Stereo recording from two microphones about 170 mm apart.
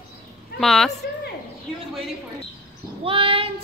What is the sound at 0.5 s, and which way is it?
Speech, centre (ahead or behind).